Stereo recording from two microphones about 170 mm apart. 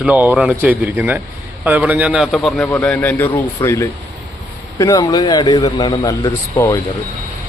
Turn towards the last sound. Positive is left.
turn(degrees=20)  # may be behind; listen again after turning